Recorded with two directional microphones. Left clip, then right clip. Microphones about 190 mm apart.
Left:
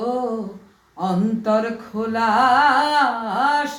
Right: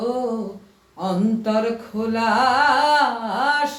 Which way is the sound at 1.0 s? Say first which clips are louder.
Left 1 dB; 15° left (ahead or behind).